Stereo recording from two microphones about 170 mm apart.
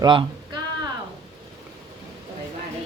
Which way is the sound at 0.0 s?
30° right (ahead or behind).